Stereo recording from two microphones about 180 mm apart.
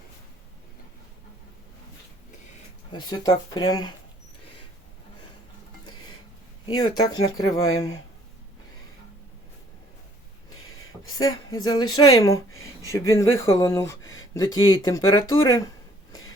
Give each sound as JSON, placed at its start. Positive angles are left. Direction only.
{"t": 2.9, "sound": "a woman's voice", "side_deg": 25}
{"t": 6.8, "sound": "a woman's voice", "side_deg": 25}
{"t": 11.1, "sound": "a woman's voice", "side_deg": 20}